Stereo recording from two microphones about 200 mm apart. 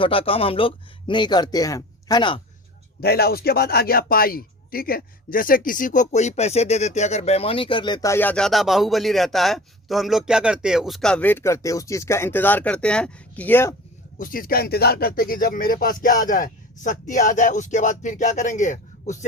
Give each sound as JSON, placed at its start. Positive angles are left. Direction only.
{"t": 0.0, "sound": "speech", "side_deg": 25}
{"t": 3.0, "sound": "speech", "side_deg": 50}
{"t": 14.2, "sound": "speech", "side_deg": 45}